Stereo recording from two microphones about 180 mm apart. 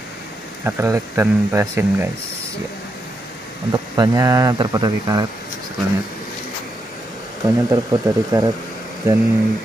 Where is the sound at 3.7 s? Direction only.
20° right (ahead or behind).